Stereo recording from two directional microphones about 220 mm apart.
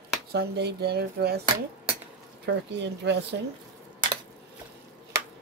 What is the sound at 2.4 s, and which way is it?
Speech, 50° right (ahead or behind).